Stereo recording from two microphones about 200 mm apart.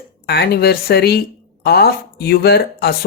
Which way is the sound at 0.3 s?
50° left (ahead or behind).